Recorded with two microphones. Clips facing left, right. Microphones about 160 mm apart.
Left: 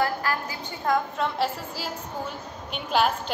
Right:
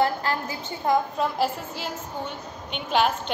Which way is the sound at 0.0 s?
20° right (ahead or behind).